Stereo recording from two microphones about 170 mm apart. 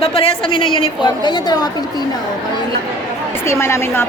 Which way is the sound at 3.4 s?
15° left (ahead or behind).